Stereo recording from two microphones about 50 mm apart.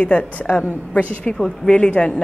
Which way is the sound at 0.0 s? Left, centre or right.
Left.